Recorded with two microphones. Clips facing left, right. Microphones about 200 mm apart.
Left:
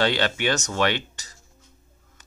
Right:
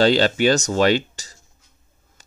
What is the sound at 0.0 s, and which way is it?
Speech, 35° right (ahead or behind).